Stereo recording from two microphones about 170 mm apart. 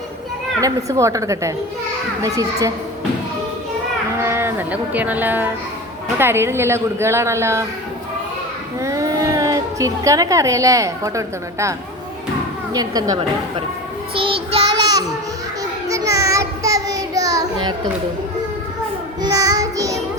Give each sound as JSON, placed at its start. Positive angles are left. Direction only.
{"t": 0.6, "sound": "a woman's voice", "side_deg": -20}
{"t": 4.2, "sound": "a woman's voice", "side_deg": -15}
{"t": 8.8, "sound": "a woman's voice", "side_deg": -20}
{"t": 12.7, "sound": "a woman's voice", "side_deg": -25}
{"t": 14.2, "sound": "child singing", "side_deg": -30}
{"t": 19.2, "sound": "child singing", "side_deg": -20}